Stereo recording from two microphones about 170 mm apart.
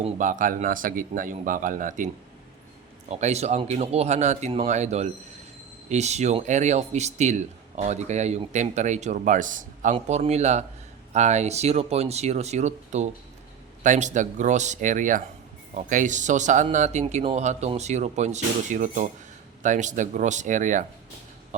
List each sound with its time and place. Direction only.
0.2 s speech: 50° right (ahead or behind)
3.1 s speech: 40° right (ahead or behind)